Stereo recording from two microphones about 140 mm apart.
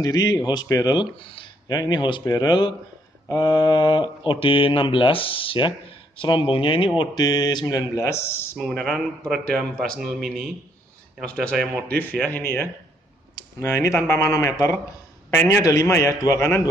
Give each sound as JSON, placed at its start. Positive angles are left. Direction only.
{"t": 0.0, "sound": "speech", "side_deg": 25}
{"t": 8.0, "sound": "a man's voice", "side_deg": 20}
{"t": 8.5, "sound": "a man's voice", "side_deg": 5}